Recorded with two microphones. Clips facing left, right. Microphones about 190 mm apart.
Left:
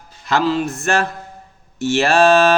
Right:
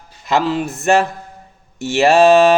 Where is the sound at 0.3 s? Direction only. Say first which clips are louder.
Even; 20° right (ahead or behind).